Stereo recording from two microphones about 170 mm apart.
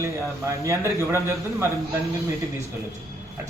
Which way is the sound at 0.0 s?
20° right (ahead or behind).